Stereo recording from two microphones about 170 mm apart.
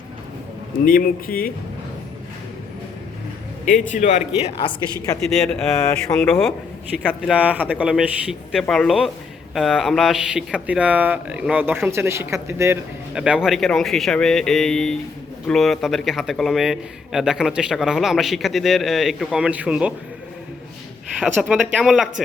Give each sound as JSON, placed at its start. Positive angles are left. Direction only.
{"t": 0.9, "sound": "speech", "side_deg": 55}
{"t": 3.7, "sound": "a man's voice", "side_deg": 45}
{"t": 5.7, "sound": "speech", "side_deg": 15}
{"t": 6.2, "sound": "a man's voice", "side_deg": 5}
{"t": 7.2, "sound": "a man's voice", "side_deg": -5}
{"t": 21.2, "sound": "a man's voice", "side_deg": -5}